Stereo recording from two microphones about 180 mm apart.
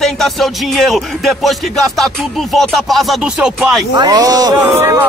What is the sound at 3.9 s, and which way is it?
Speech, 20° right (ahead or behind).